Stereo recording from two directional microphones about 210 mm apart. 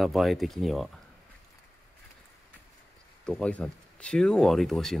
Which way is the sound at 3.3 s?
5° left (ahead or behind).